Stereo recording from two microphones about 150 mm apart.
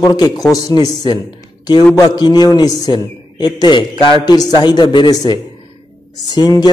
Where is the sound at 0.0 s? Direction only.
25° left (ahead or behind).